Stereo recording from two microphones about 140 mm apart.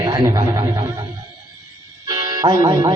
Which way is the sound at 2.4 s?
25° right (ahead or behind).